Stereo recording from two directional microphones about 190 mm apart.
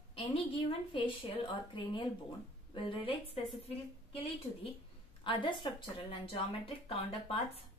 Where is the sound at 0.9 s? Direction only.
25° left (ahead or behind).